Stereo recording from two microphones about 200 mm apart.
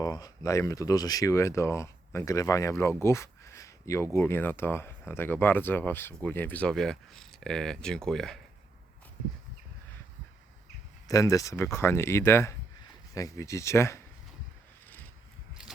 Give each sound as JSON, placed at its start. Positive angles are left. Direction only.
{"t": 0.0, "sound": "speech", "side_deg": 20}
{"t": 11.1, "sound": "speech", "side_deg": 15}